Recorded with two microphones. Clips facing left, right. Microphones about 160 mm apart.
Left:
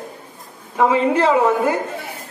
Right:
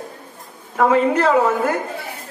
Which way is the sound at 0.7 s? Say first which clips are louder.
Even; 15° left (ahead or behind).